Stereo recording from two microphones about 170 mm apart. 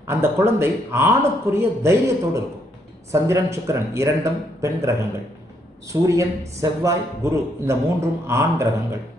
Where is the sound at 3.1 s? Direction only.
15° right (ahead or behind).